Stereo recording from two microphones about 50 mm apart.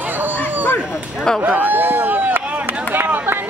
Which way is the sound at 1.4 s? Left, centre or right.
Right.